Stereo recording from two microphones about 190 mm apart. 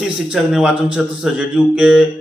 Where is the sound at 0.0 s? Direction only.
5° right (ahead or behind).